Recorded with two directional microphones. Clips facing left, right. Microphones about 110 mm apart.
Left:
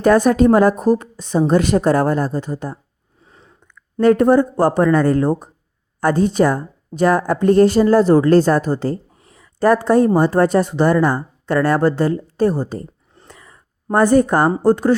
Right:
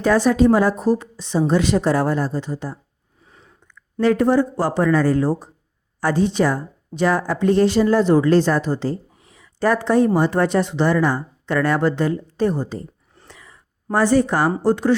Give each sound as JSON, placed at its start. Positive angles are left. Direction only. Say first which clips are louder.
{"t": 0.0, "sound": "speech", "louder": "left 3 dB", "side_deg": 50}
{"t": 3.9, "sound": "speech", "louder": "left 4 dB", "side_deg": 45}
{"t": 13.2, "sound": "a sound", "louder": "left 2 dB", "side_deg": 45}
{"t": 13.9, "sound": "speech", "louder": "left 4 dB", "side_deg": 50}